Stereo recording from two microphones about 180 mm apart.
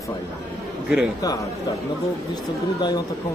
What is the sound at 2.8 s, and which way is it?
Speech, 25° left (ahead or behind).